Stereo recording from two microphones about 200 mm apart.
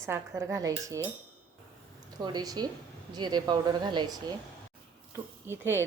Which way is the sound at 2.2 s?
20° right (ahead or behind).